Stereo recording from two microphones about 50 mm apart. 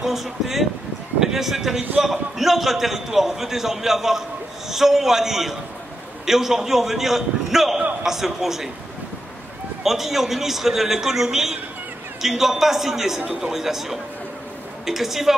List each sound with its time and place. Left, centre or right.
0.0 s a man's voice: centre
9.8 s a man's voice: centre
13.2 s a man's voice: centre
13.5 s a man's voice: centre